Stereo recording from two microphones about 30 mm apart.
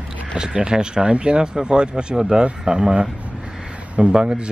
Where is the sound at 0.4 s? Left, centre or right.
Right.